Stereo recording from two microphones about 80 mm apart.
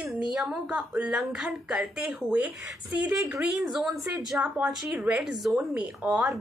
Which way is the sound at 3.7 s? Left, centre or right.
Centre.